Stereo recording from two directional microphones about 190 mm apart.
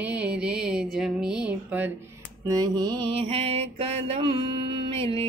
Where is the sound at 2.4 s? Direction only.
20° right (ahead or behind).